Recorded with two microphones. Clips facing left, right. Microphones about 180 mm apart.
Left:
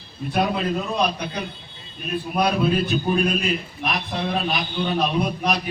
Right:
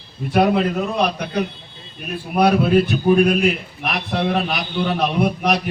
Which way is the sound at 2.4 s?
70° right (ahead or behind).